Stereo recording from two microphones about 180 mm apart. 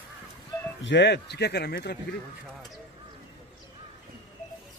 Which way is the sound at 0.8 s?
70° left (ahead or behind).